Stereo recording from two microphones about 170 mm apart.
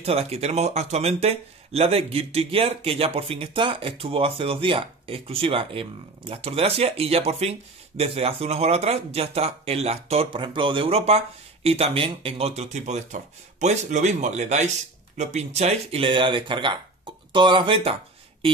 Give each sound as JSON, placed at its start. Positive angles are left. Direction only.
{"t": 0.0, "sound": "speech", "side_deg": -35}